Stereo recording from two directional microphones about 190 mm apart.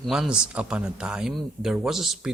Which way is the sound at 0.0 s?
5° right (ahead or behind).